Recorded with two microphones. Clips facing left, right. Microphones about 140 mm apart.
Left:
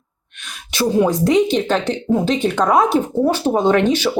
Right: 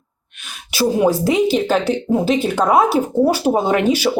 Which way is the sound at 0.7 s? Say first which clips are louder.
Right 1 dB; 10° right (ahead or behind).